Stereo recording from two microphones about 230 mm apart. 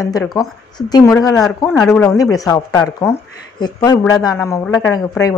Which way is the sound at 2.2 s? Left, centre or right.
Centre.